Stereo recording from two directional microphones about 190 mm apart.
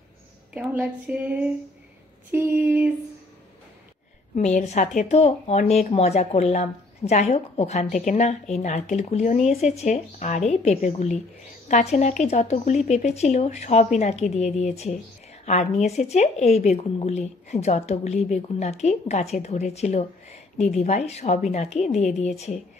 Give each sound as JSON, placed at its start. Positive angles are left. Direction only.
{"t": 0.6, "sound": "a woman's voice", "side_deg": -5}
{"t": 4.4, "sound": "speech", "side_deg": 35}